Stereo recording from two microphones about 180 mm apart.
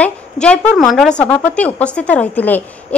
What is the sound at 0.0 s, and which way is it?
A woman's voice, 5° left (ahead or behind).